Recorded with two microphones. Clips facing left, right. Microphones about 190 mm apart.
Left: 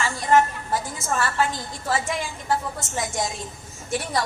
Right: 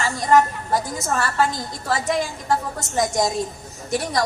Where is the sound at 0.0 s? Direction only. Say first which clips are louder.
Right 2 dB; 40° right (ahead or behind).